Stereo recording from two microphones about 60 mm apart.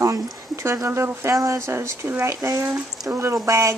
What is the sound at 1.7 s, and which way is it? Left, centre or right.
Speech, right.